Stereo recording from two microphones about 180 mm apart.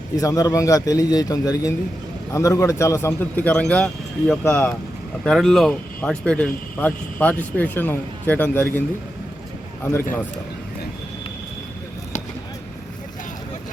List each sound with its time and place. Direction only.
0.2 s a man's voice: 20° left (ahead or behind)
9.8 s a man's voice: 10° left (ahead or behind)